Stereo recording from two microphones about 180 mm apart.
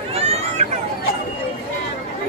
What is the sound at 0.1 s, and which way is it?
Run, 35° right (ahead or behind).